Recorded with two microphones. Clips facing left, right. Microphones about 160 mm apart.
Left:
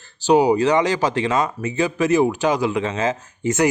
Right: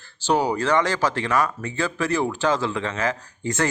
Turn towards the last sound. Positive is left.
turn(degrees=20)  # may be behind; listen again after turning